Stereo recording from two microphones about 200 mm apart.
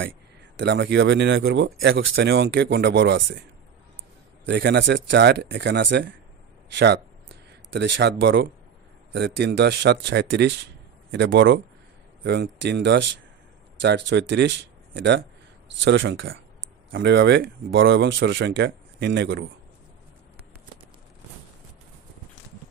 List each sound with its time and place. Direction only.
0.6 s speech: 60° right (ahead or behind)
4.5 s speech: 60° right (ahead or behind)
6.7 s a sound: 60° right (ahead or behind)
9.1 s speech: 60° right (ahead or behind)